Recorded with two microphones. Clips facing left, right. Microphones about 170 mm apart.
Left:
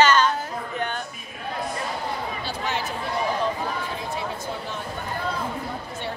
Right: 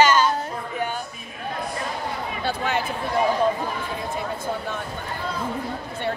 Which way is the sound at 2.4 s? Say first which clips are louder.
Right 6 dB; 55° right (ahead or behind).